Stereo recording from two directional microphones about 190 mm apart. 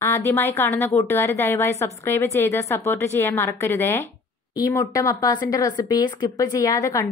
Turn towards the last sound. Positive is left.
turn(degrees=20)  # may be behind; listen again after turning